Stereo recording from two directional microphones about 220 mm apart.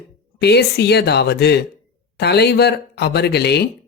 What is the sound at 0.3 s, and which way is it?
Speech, 50° left (ahead or behind).